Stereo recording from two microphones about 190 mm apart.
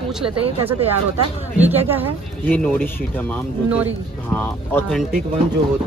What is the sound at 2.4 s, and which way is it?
Speech, 10° left (ahead or behind).